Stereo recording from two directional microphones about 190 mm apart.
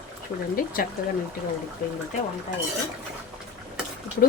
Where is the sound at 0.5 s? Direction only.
50° left (ahead or behind).